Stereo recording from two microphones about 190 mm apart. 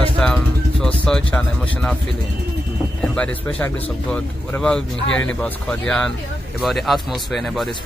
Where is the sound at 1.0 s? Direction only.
5° left (ahead or behind).